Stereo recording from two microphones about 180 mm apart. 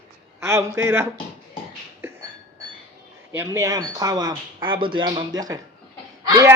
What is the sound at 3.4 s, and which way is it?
A man's voice, 15° right (ahead or behind).